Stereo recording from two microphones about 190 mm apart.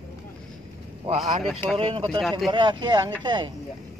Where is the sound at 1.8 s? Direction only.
30° right (ahead or behind).